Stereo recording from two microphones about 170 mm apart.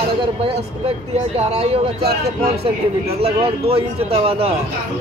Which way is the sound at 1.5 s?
35° right (ahead or behind).